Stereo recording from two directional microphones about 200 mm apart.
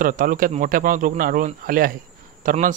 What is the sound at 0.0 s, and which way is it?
Speech, 40° right (ahead or behind).